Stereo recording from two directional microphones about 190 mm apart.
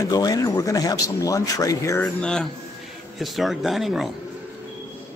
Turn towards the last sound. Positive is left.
turn(degrees=0)  # may be behind; listen again after turning